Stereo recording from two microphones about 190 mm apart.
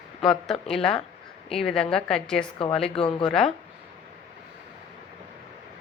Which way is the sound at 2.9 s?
30° left (ahead or behind).